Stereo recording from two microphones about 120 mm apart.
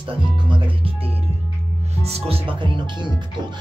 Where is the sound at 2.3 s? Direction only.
45° right (ahead or behind).